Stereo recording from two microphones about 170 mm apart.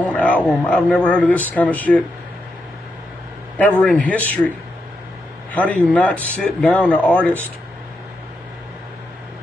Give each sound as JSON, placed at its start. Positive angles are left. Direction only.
{"t": 0.0, "sound": "a man's voice", "side_deg": 10}
{"t": 3.5, "sound": "speech", "side_deg": 10}
{"t": 5.5, "sound": "a man's voice", "side_deg": 10}